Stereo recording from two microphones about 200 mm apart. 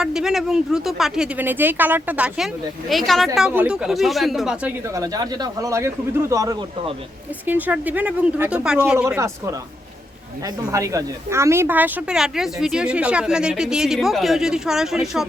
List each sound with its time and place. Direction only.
0.0 s speech: 5° right (ahead or behind)
4.9 s speech: 20° right (ahead or behind); by 15.3 s centre (ahead or behind)